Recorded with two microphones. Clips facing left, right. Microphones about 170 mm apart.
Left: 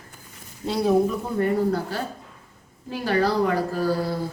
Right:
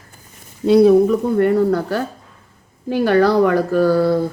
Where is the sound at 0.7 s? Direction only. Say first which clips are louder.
Right 10 dB; 65° right (ahead or behind).